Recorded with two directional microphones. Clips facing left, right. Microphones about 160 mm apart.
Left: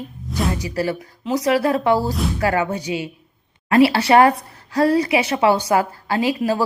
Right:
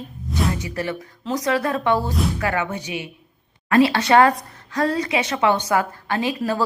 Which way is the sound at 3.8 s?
30° left (ahead or behind).